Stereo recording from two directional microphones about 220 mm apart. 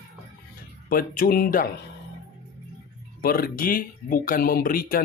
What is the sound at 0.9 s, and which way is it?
Speech, 40° left (ahead or behind).